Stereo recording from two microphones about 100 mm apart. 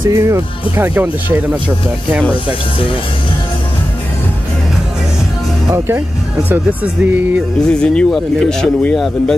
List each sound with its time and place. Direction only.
0.1 s speech: 25° right (ahead or behind)
6.5 s speech: 15° right (ahead or behind)
7.6 s speech: 10° left (ahead or behind)